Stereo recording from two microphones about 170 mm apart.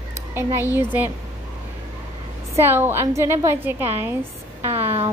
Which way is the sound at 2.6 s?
15° right (ahead or behind).